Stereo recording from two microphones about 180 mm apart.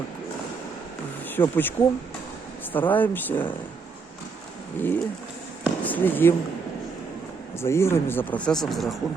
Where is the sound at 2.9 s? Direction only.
10° left (ahead or behind).